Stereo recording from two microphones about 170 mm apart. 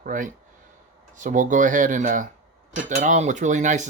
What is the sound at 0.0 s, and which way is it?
Speech, 50° right (ahead or behind).